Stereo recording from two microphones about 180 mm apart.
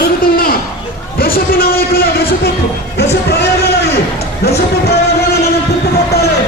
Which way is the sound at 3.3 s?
65° left (ahead or behind).